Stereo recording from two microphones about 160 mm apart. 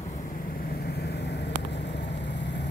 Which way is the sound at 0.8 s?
90° left.